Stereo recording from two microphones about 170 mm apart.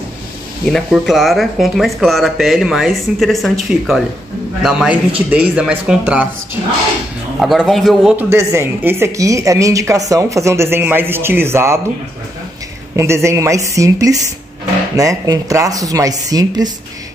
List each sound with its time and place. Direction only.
0.7 s speech: centre (ahead or behind)
7.3 s speech: centre (ahead or behind)
12.9 s speech: 15° right (ahead or behind)